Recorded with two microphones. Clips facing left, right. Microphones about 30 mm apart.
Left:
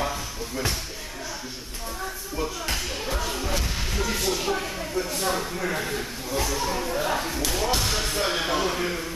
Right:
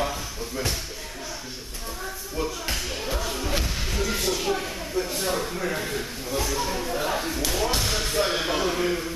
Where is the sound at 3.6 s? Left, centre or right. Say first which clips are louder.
Even; centre.